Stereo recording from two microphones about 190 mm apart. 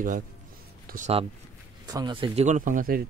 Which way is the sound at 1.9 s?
20° right (ahead or behind).